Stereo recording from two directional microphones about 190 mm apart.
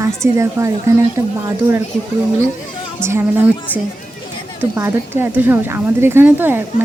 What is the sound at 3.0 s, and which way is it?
A woman's voice, 10° right (ahead or behind).